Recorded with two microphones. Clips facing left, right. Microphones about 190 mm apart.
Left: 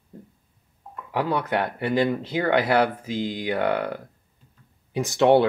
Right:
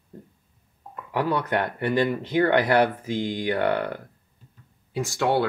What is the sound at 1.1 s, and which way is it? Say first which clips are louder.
Speech: even; 10° left (ahead or behind).